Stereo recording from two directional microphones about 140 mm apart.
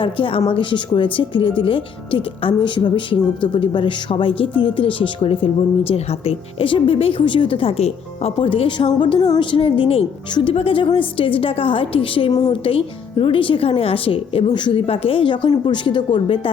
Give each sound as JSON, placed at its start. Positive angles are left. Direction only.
{"t": 0.0, "sound": "a woman's voice", "side_deg": 40}